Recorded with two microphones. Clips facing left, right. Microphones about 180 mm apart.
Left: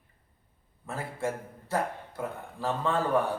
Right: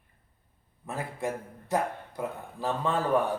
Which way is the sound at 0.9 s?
20° right (ahead or behind).